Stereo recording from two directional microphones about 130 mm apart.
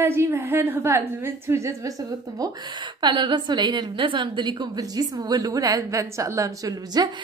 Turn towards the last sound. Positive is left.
turn(degrees=-30)  # may be behind; listen again after turning